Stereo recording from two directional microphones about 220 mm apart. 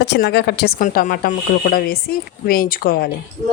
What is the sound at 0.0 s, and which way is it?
Speech, 50° left (ahead or behind).